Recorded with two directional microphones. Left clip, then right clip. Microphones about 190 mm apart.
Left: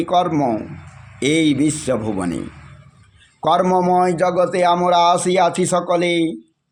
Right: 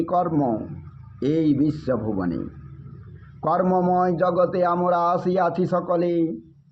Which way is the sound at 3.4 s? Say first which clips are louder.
Left 5 dB; 25° left (ahead or behind).